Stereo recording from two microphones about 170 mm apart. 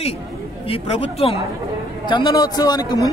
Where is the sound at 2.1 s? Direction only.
25° left (ahead or behind).